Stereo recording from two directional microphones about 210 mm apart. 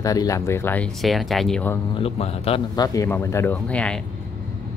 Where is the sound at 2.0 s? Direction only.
30° left (ahead or behind); by 4.0 s 5° left (ahead or behind).